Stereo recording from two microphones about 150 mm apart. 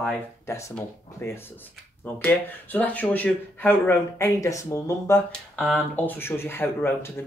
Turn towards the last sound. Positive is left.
turn(degrees=15)  # may be behind; listen again after turning